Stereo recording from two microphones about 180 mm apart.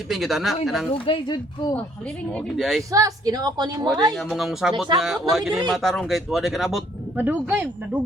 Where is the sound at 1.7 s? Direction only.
5° left (ahead or behind).